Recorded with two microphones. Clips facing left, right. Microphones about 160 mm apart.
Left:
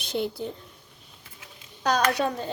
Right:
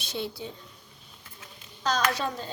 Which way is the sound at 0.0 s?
55° left (ahead or behind).